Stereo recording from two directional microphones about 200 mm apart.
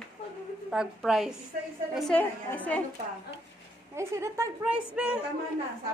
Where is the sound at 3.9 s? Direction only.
15° right (ahead or behind).